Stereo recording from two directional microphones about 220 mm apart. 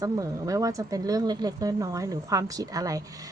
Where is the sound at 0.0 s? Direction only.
15° right (ahead or behind).